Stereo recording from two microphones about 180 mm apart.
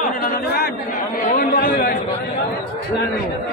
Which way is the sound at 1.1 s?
50° left (ahead or behind).